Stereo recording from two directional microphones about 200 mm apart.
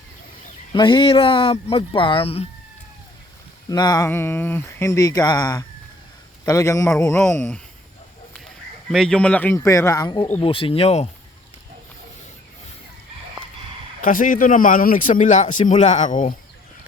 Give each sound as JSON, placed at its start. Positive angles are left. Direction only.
{"t": 0.7, "sound": "speech", "side_deg": 25}
{"t": 3.7, "sound": "speech", "side_deg": 20}
{"t": 6.9, "sound": "a man's voice", "side_deg": 5}
{"t": 14.0, "sound": "a man's voice", "side_deg": 45}